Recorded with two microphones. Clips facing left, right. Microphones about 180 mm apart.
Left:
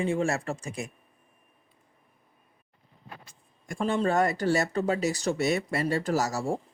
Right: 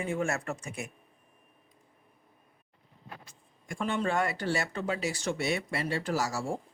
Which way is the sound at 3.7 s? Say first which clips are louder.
Left 4 dB; 35° left (ahead or behind).